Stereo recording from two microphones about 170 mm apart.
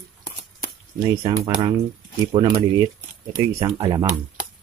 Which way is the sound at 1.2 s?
30° right (ahead or behind).